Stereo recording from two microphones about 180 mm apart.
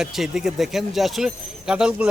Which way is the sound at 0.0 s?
Centre (ahead or behind).